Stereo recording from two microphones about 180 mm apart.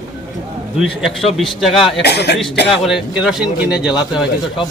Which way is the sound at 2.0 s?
65° left (ahead or behind).